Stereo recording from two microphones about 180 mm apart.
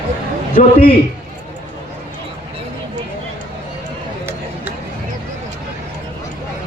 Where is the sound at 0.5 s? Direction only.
55° left (ahead or behind).